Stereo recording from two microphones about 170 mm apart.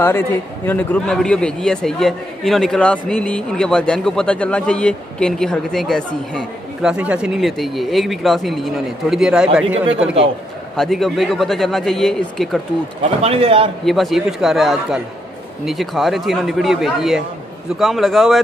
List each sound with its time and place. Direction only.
0.7 s a man's voice: 5° left (ahead or behind)
10.8 s a man's voice: centre (ahead or behind)
13.2 s a man's voice: 35° right (ahead or behind)
13.8 s a man's voice: centre (ahead or behind)